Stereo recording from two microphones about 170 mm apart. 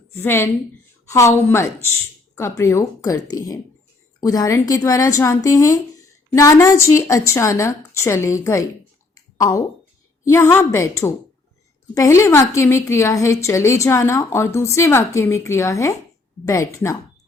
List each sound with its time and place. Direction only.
0.1 s a woman's voice: 15° left (ahead or behind)